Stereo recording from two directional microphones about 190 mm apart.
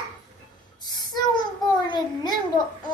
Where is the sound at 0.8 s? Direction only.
20° left (ahead or behind).